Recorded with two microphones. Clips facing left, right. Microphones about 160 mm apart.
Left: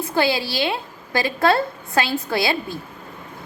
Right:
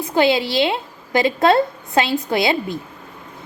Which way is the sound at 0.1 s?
20° right (ahead or behind).